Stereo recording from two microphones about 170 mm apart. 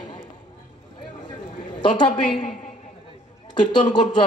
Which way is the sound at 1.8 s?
30° left (ahead or behind).